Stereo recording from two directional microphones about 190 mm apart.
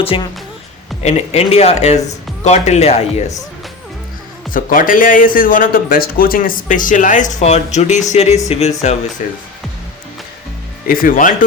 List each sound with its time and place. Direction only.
0.0 s a woman's voice: 30° left (ahead or behind)
4.5 s speech: 45° left (ahead or behind)
10.8 s speech: 50° left (ahead or behind)